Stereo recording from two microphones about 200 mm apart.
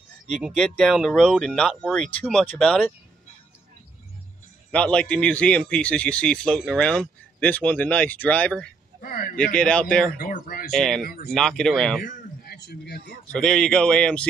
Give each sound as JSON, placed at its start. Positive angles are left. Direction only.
{"t": 0.3, "sound": "a man's voice", "side_deg": 0}
{"t": 4.6, "sound": "a man's voice", "side_deg": 5}
{"t": 9.0, "sound": "speech", "side_deg": 45}
{"t": 9.6, "sound": "a man's voice", "side_deg": 5}
{"t": 10.1, "sound": "speech", "side_deg": 45}
{"t": 10.7, "sound": "a man's voice", "side_deg": 0}
{"t": 12.0, "sound": "speech", "side_deg": 45}
{"t": 13.3, "sound": "a man's voice", "side_deg": 5}